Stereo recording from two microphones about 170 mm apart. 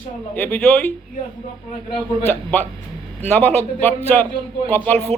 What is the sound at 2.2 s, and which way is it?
A man's voice, 15° left (ahead or behind).